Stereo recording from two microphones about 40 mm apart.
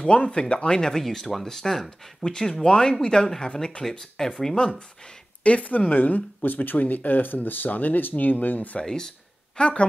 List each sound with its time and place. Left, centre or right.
0.1 s speech: left
5.4 s speech: left
5.7 s speech: left
8.8 s speech: centre
9.6 s speech: left